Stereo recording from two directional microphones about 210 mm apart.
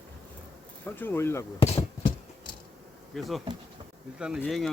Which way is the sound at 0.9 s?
10° left (ahead or behind).